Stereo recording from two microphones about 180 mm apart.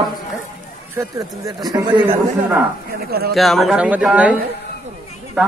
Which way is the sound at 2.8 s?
60° right (ahead or behind).